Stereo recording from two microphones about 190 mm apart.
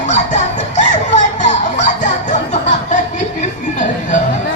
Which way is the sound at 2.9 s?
40° left (ahead or behind).